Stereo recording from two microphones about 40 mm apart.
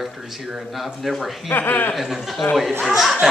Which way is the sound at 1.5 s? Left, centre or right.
Left.